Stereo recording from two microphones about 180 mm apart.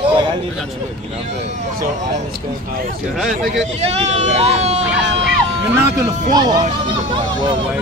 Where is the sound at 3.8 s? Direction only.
35° right (ahead or behind).